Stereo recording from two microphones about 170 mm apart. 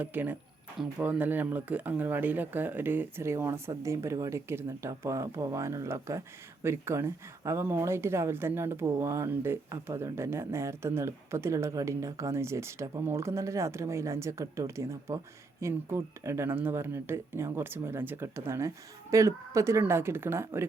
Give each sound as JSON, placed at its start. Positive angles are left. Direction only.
{"t": 0.0, "sound": "speech", "side_deg": -10}